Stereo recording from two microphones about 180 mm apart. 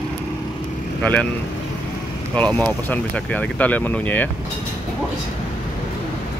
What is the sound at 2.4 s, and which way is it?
Speech, 5° left (ahead or behind).